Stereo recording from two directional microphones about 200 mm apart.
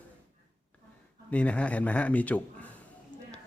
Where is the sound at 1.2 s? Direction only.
5° left (ahead or behind).